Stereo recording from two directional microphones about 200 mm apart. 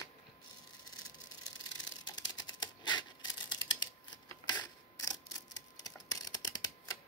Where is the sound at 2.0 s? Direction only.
20° left (ahead or behind).